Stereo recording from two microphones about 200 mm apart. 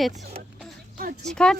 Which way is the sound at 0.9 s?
45° right (ahead or behind).